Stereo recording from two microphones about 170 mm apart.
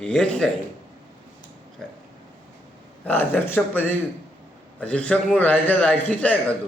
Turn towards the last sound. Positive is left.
turn(degrees=10)  # may be behind; listen again after turning